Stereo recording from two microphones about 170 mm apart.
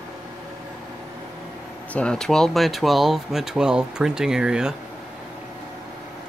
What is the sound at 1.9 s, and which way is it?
Speech, 5° left (ahead or behind).